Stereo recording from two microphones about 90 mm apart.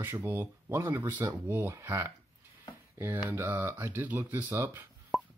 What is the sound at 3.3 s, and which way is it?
Speech, 25° right (ahead or behind).